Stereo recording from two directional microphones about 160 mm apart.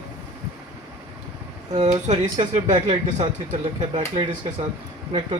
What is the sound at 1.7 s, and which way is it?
Speech, 45° right (ahead or behind).